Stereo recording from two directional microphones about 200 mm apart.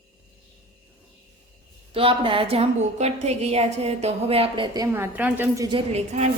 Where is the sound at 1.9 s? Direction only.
25° right (ahead or behind).